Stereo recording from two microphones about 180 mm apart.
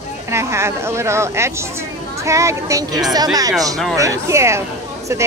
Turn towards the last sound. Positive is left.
turn(degrees=-15)  # may be behind; listen again after turning